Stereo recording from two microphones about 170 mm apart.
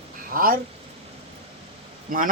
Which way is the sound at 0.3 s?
55° right (ahead or behind).